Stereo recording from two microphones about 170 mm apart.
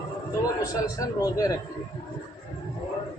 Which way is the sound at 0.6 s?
20° left (ahead or behind).